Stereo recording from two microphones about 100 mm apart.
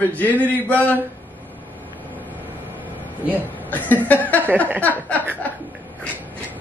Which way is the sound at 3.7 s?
15° left (ahead or behind).